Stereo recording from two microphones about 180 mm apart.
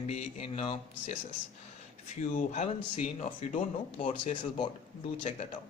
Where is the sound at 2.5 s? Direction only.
40° left (ahead or behind).